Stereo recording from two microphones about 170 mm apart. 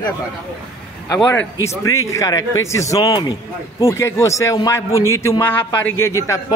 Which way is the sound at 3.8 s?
15° left (ahead or behind).